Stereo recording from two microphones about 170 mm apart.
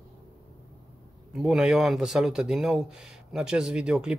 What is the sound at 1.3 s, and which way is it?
Speech, 5° right (ahead or behind).